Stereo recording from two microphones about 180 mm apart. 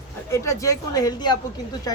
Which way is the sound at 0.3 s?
15° left (ahead or behind).